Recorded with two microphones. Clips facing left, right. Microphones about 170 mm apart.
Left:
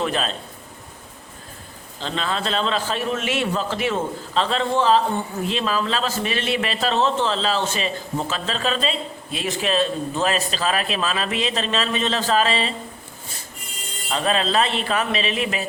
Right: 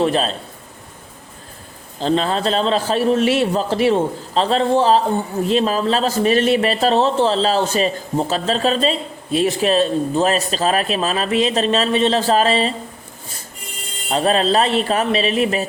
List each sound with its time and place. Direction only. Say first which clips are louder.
0.0 s a man's voice: right 6 dB; 35° right (ahead or behind)
2.0 s a man's voice: right 8 dB; 40° right (ahead or behind)
14.1 s a man's voice: right 5 dB; 40° right (ahead or behind)